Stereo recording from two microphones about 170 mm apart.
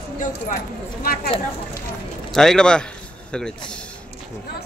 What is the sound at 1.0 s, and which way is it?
Speech, 60° left (ahead or behind).